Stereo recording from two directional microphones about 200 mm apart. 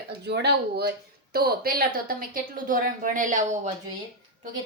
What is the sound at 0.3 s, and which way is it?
Speech, 55° right (ahead or behind).